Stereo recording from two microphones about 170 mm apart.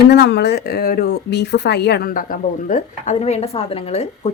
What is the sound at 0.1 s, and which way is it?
Speech, 80° left.